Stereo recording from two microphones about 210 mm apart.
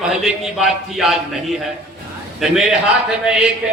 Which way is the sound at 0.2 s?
Centre (ahead or behind).